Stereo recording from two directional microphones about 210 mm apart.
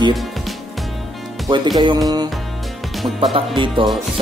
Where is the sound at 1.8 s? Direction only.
20° right (ahead or behind).